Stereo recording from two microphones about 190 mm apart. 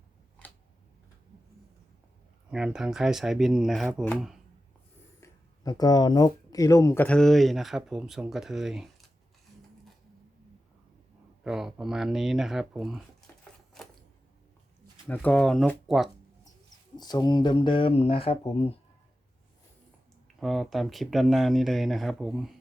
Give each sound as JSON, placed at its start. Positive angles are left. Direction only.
{"t": 2.5, "sound": "speech", "side_deg": -5}
{"t": 5.2, "sound": "speech", "side_deg": 20}
{"t": 11.4, "sound": "speech", "side_deg": 0}
{"t": 15.0, "sound": "speech", "side_deg": 10}
{"t": 17.0, "sound": "speech", "side_deg": 20}
{"t": 20.4, "sound": "speech", "side_deg": 0}